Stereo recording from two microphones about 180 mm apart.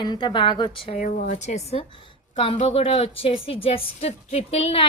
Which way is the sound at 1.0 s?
45° left (ahead or behind).